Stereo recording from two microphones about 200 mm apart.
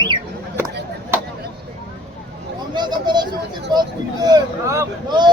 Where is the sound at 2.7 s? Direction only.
20° right (ahead or behind).